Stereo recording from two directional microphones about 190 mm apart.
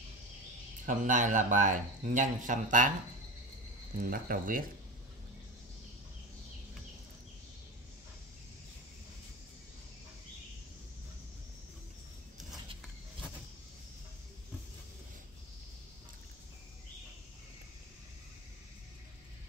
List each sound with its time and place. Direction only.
0.8 s speech: 45° right (ahead or behind)
4.0 s speech: 50° right (ahead or behind)